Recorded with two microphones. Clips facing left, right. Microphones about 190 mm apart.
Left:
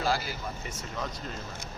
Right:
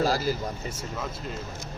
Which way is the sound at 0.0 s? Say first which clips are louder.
Right 5 dB; 40° right (ahead or behind).